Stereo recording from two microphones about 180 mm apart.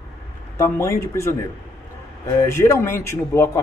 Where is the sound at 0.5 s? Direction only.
15° left (ahead or behind).